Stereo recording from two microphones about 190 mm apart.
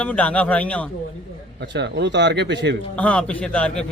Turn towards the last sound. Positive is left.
turn(degrees=5)  # may be behind; listen again after turning